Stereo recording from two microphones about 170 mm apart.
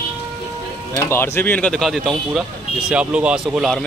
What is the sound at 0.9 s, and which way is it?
Speech, 15° left (ahead or behind).